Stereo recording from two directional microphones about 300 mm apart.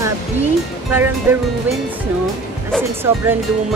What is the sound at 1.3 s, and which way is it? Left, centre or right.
Speech, centre.